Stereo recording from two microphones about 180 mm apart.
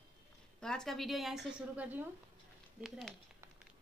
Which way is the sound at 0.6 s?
5° left (ahead or behind).